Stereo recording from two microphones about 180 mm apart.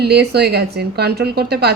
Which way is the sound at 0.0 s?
65° right (ahead or behind).